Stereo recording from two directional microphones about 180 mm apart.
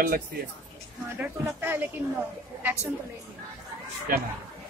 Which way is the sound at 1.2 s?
15° right (ahead or behind).